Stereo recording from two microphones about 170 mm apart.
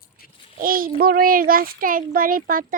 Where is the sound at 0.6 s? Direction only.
55° right (ahead or behind).